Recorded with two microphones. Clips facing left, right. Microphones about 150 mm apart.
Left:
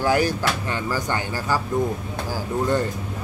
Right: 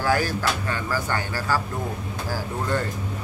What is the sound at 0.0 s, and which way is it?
Speech, 20° left (ahead or behind).